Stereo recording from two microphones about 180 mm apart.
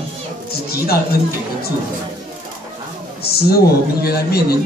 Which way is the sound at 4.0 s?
60° left (ahead or behind).